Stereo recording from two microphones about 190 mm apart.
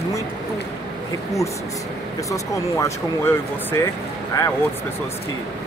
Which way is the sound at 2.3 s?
15° left (ahead or behind).